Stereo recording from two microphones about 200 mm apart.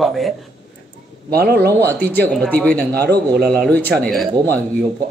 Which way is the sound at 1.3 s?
50° right (ahead or behind).